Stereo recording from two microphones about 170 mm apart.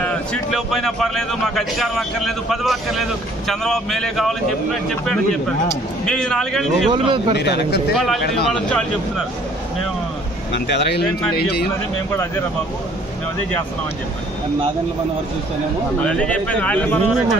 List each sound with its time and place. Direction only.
0.0 s a man's voice: 5° left (ahead or behind)
6.9 s a man's voice: 30° right (ahead or behind)
7.3 s speech: 80° left
7.9 s a man's voice: centre (ahead or behind)
10.5 s speech: 80° left
16.0 s speech: 5° left (ahead or behind)